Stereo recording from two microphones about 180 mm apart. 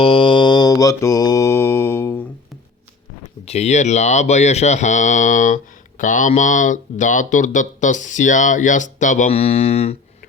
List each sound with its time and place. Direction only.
0.0 s mantra: 30° left (ahead or behind); by 2.1 s 15° left (ahead or behind)
3.4 s speech: 35° left (ahead or behind)